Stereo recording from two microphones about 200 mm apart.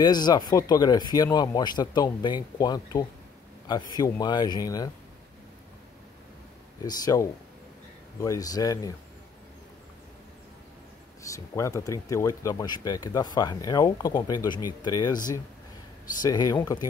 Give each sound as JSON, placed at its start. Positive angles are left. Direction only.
{"t": 0.0, "sound": "speech", "side_deg": 20}
{"t": 6.8, "sound": "speech", "side_deg": 15}
{"t": 11.2, "sound": "speech", "side_deg": 15}
{"t": 16.2, "sound": "speech", "side_deg": 20}